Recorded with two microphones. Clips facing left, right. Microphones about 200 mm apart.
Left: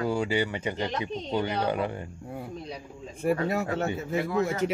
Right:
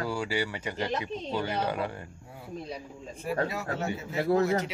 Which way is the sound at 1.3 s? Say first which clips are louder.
Left 3 dB; 20° left (ahead or behind).